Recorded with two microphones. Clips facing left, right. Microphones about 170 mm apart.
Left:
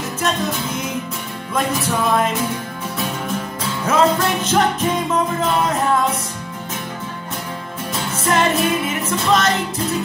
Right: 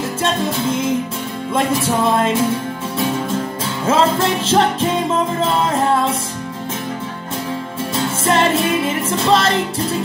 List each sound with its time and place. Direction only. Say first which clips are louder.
0.2 s music: right 2 dB; 30° right (ahead or behind)
3.8 s music: right 1 dB; 25° right (ahead or behind)
7.9 s music: right 2 dB; 30° right (ahead or behind)